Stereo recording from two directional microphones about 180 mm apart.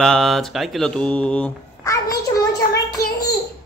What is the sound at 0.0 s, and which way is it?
Speech, centre (ahead or behind).